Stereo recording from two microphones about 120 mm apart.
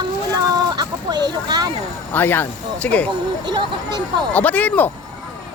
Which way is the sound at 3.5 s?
35° right (ahead or behind).